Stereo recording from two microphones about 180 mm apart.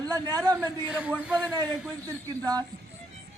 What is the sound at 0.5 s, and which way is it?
A man's voice, 5° right (ahead or behind).